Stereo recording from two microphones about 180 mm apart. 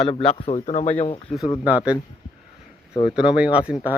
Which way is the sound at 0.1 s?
30° left (ahead or behind).